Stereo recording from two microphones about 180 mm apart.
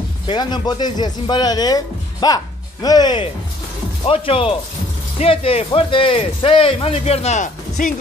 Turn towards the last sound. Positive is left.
turn(degrees=50)  # may be behind; listen again after turning